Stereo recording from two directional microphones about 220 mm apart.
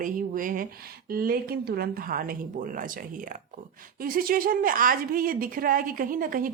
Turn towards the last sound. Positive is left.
turn(degrees=-40)  # may be behind; listen again after turning